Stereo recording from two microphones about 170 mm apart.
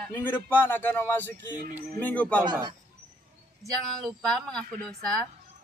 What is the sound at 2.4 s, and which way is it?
Speech, 25° right (ahead or behind).